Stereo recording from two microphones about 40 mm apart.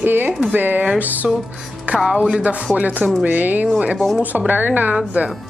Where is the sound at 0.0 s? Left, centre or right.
Right.